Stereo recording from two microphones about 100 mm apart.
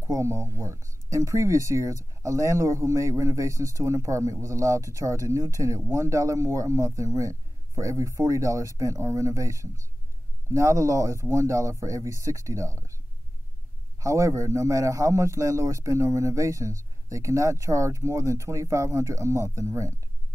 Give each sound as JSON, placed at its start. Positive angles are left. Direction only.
{"t": 0.0, "sound": "a man's voice", "side_deg": -30}